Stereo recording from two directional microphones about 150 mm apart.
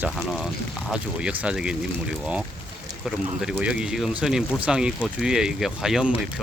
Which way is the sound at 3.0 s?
Centre (ahead or behind).